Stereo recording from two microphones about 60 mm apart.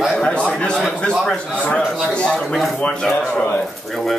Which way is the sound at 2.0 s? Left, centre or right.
Centre.